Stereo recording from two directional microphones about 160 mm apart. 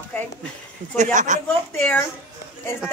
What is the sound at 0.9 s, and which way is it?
Speech, 50° right (ahead or behind).